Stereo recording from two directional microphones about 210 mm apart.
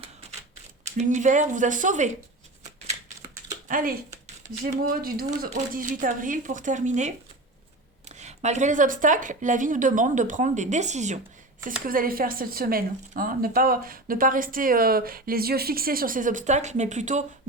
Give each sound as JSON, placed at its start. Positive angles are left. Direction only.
{"t": 0.9, "sound": "speech", "side_deg": -35}
{"t": 3.7, "sound": "speech", "side_deg": -40}